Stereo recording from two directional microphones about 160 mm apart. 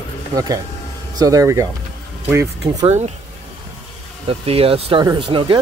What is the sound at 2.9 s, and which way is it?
Speech, 45° right (ahead or behind).